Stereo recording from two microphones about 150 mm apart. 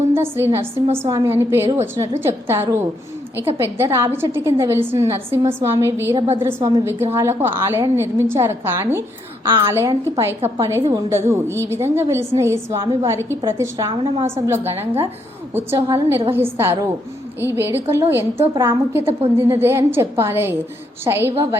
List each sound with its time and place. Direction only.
0.1 s a woman's voice: 15° right (ahead or behind)
12.8 s a woman's voice: 30° right (ahead or behind)
13.1 s a woman's voice: 20° right (ahead or behind); by 14.3 s 35° right (ahead or behind)
14.4 s a woman's voice: 15° right (ahead or behind)